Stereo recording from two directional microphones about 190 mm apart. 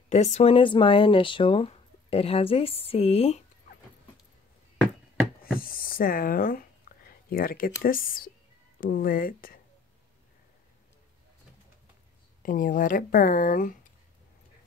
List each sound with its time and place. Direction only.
0.1 s speech: 35° left (ahead or behind)
5.4 s a sound: 50° left (ahead or behind)
7.2 s speech: 50° left (ahead or behind)
12.4 s speech: 45° left (ahead or behind)